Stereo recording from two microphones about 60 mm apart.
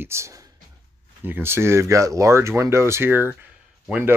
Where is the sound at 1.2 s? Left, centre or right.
Right.